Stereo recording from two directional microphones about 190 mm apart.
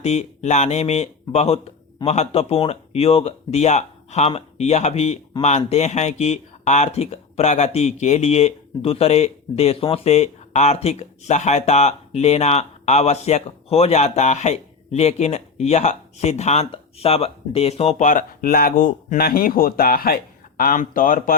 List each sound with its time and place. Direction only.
0.0 s speech: 35° left (ahead or behind)